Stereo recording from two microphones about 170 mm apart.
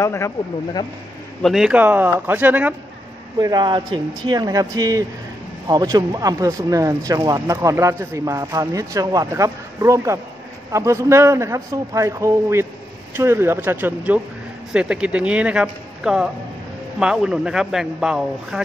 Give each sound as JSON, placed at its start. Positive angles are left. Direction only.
{"t": 0.0, "sound": "speech", "side_deg": 15}
{"t": 1.4, "sound": "a man's voice", "side_deg": 0}
{"t": 3.3, "sound": "a man's voice", "side_deg": -25}